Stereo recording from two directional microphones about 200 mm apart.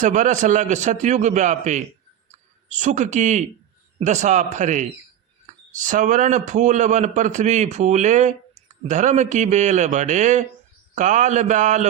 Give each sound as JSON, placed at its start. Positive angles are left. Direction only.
{"t": 0.0, "sound": "a man's voice", "side_deg": -40}